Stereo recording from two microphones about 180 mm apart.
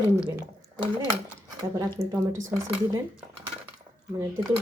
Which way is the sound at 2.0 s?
15° right (ahead or behind).